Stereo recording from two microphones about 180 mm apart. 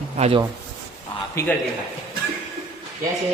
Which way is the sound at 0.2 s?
30° right (ahead or behind).